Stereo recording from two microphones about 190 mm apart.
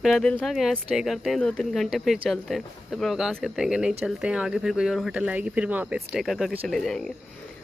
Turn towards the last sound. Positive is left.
turn(degrees=0)  # may be behind; listen again after turning